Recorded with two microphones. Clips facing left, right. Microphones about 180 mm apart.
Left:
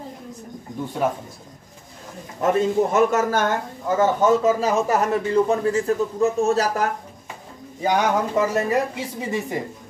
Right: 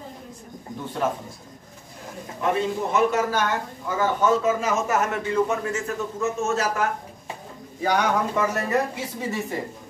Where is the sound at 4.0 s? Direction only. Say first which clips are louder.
Left 3 dB; 35° left (ahead or behind).